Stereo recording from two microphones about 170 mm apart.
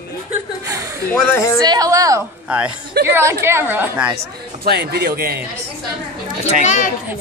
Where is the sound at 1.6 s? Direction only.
20° right (ahead or behind).